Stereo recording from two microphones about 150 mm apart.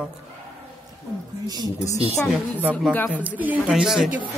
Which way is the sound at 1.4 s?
25° right (ahead or behind).